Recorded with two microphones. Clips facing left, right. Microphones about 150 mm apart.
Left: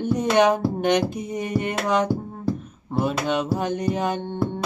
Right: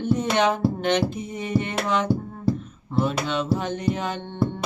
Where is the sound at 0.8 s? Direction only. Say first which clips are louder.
Left 2 dB; 15° left (ahead or behind).